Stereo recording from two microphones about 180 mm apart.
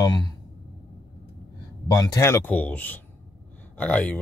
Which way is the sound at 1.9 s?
15° left (ahead or behind).